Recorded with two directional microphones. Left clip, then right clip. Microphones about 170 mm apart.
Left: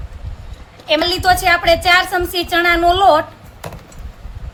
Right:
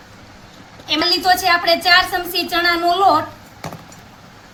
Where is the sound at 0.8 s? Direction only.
60° left (ahead or behind).